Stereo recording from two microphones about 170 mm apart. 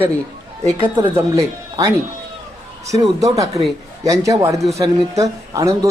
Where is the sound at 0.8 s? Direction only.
15° right (ahead or behind).